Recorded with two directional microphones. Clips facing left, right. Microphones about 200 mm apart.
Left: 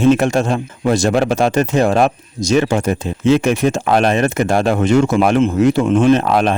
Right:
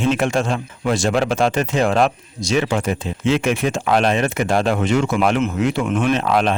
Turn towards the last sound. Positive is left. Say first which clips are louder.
# left 4 dB
turn(degrees=40)  # may be behind; listen again after turning